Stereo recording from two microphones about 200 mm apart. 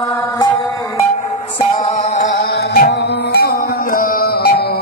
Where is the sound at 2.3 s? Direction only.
55° left (ahead or behind).